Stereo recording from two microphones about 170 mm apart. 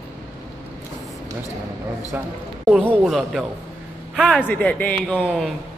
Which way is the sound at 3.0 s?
Centre (ahead or behind).